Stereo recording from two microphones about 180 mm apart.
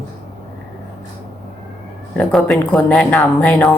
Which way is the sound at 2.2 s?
Centre (ahead or behind).